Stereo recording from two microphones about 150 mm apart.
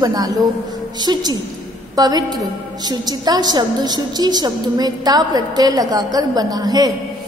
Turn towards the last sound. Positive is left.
turn(degrees=-25)  # may be behind; listen again after turning